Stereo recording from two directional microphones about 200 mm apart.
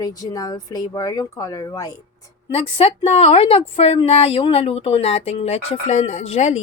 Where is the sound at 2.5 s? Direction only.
30° left (ahead or behind).